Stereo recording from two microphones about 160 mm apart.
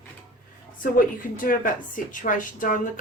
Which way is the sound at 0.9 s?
60° left (ahead or behind).